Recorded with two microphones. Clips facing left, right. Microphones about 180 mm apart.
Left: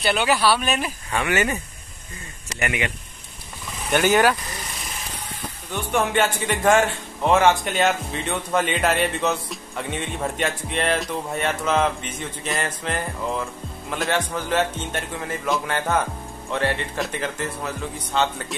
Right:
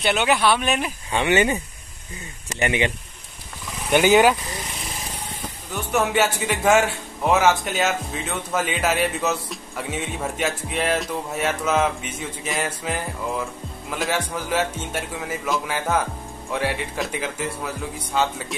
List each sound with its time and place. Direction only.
0.6 s speech: 15° right (ahead or behind)
2.6 s speech: 30° right (ahead or behind)
3.9 s speech: 15° right (ahead or behind)
5.7 s a man's voice: 5° right (ahead or behind)